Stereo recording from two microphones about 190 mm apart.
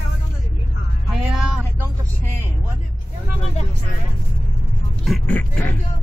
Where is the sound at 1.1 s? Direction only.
5° right (ahead or behind).